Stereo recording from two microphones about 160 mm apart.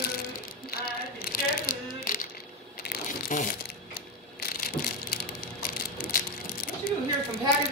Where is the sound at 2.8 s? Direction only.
65° left (ahead or behind).